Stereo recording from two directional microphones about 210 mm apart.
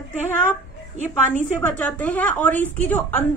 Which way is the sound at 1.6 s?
5° left (ahead or behind).